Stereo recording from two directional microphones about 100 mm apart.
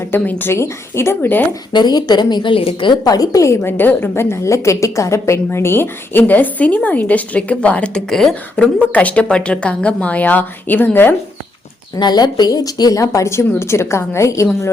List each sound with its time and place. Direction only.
0.1 s a woman's voice: 20° left (ahead or behind)
1.7 s speech: 45° left (ahead or behind); by 2.9 s 65° left (ahead or behind)
3.0 s a woman's voice: 40° left (ahead or behind); by 11.1 s 20° left (ahead or behind)
11.9 s a woman's voice: 45° left (ahead or behind)